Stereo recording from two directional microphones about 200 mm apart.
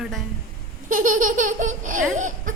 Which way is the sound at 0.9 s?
40° right (ahead or behind).